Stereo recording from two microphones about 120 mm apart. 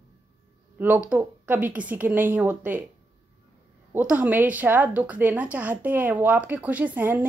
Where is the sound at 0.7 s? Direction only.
15° right (ahead or behind).